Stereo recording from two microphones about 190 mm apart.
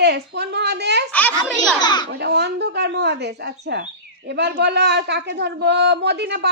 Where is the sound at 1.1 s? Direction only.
10° left (ahead or behind).